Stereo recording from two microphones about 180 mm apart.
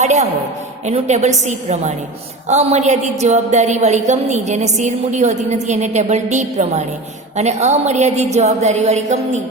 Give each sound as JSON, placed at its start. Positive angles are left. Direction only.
{"t": 0.0, "sound": "a woman's voice", "side_deg": -40}